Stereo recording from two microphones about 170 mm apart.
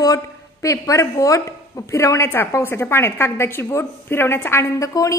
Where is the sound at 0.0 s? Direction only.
20° left (ahead or behind).